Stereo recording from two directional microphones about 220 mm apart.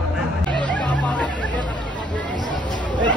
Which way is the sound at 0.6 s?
5° left (ahead or behind).